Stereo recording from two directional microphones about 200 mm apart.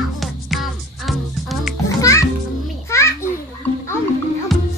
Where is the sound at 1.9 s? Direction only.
15° left (ahead or behind).